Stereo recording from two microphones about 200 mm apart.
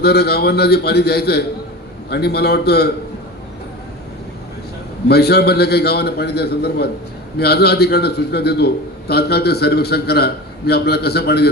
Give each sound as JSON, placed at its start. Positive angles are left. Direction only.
{"t": 0.0, "sound": "a man's voice", "side_deg": 55}
{"t": 5.0, "sound": "a man's voice", "side_deg": 55}